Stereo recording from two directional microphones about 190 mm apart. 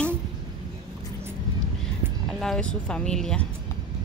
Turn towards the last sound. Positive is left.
turn(degrees=5)  # may be behind; listen again after turning